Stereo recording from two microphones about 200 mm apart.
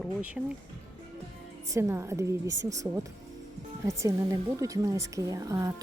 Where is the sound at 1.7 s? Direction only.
15° right (ahead or behind).